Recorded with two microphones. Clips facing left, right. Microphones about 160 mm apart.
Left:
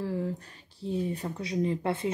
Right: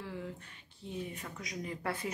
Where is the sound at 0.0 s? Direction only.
40° left (ahead or behind).